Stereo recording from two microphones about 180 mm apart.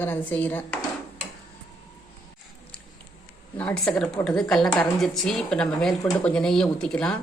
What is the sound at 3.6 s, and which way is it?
A woman's voice, 5° left (ahead or behind).